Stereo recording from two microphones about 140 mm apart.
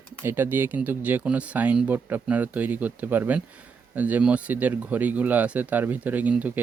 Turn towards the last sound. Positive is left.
turn(degrees=-10)  # may be behind; listen again after turning